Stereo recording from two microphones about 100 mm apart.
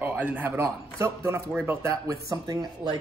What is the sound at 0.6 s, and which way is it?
A man's voice, 25° right (ahead or behind).